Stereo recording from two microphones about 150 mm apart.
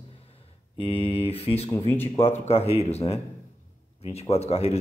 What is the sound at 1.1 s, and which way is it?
Speech, 40° left (ahead or behind).